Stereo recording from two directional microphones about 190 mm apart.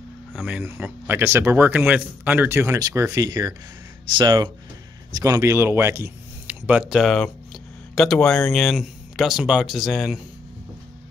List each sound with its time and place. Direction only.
0.3 s speech: 5° right (ahead or behind)